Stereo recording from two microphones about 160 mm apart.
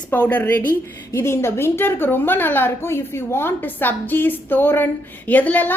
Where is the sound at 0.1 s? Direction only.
10° left (ahead or behind).